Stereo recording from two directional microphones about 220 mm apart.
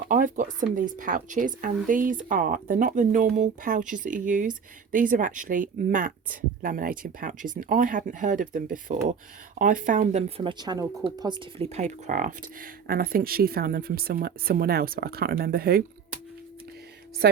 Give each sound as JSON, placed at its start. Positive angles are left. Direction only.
{"t": 0.1, "sound": "speech", "side_deg": -35}